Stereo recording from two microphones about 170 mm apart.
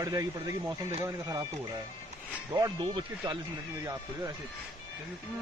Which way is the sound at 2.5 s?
25° right (ahead or behind).